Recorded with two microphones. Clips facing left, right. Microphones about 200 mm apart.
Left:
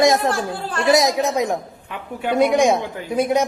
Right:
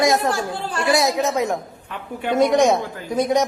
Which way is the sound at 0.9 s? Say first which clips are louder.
Left 2 dB; 20° left (ahead or behind).